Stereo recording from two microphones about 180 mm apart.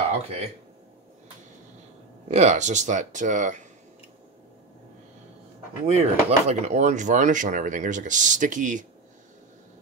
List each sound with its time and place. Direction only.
0.2 s speech: 35° right (ahead or behind)
2.2 s speech: 40° right (ahead or behind)
5.9 s speech: 35° right (ahead or behind)